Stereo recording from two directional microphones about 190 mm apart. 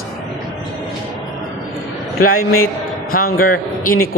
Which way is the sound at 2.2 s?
50° left (ahead or behind).